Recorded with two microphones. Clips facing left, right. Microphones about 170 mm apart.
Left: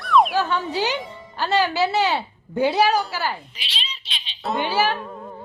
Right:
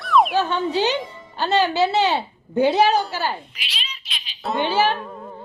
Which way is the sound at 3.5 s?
30° left (ahead or behind).